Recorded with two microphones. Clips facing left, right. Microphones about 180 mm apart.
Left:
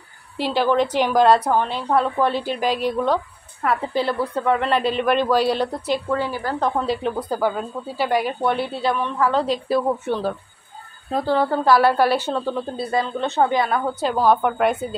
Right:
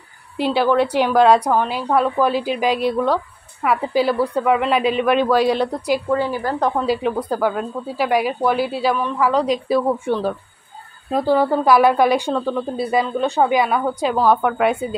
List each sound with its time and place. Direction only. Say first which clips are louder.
0.6 s a woman's voice: right 2 dB; 10° right (ahead or behind)